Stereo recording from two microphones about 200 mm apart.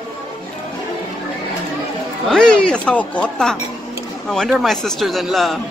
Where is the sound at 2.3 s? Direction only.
5° left (ahead or behind).